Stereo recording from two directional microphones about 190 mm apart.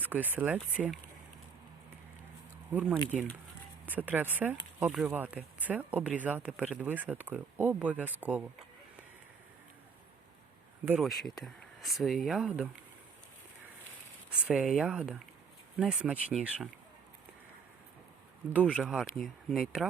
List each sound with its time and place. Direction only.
0.0 s speech: 10° right (ahead or behind)
2.7 s speech: 5° right (ahead or behind)
10.8 s speech: 5° right (ahead or behind)
14.4 s speech: centre (ahead or behind)
18.6 s speech: 5° left (ahead or behind)